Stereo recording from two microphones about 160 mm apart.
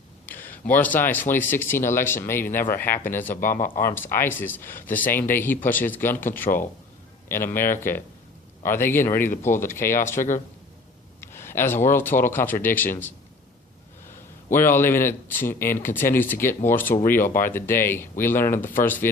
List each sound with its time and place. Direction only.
0.3 s a sound: 10° left (ahead or behind)
0.7 s speech: 10° left (ahead or behind)
10.2 s speech: 55° left (ahead or behind)
11.2 s speech: 15° left (ahead or behind)